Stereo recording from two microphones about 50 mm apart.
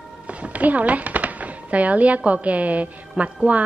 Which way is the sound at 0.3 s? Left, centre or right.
Right.